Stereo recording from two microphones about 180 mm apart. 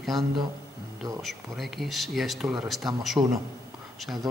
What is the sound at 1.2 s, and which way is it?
A man's voice, centre (ahead or behind).